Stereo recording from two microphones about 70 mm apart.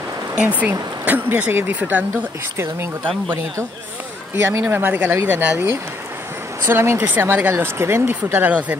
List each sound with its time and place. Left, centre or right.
0.4 s speech: right
2.5 s speech: right
4.5 s speech: right
7.5 s speech: right